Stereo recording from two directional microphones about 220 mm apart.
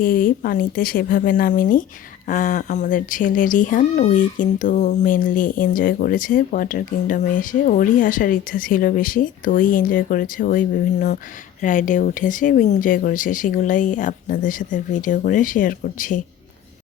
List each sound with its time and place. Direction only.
0.0 s speech: 40° left (ahead or behind)